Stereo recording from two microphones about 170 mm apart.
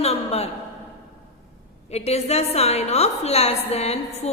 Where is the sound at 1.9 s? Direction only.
40° left (ahead or behind).